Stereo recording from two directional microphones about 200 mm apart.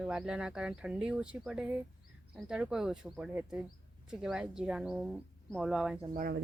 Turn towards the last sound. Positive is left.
turn(degrees=-45)  # may be behind; listen again after turning